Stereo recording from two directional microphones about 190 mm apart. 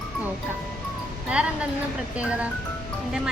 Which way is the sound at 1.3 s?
5° right (ahead or behind).